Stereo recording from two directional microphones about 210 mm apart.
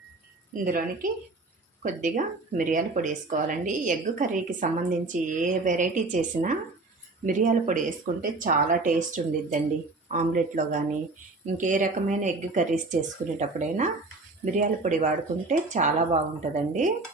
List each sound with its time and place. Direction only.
0.5 s speech: 40° right (ahead or behind)